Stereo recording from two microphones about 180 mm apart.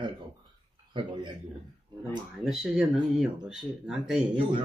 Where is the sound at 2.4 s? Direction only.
Centre (ahead or behind).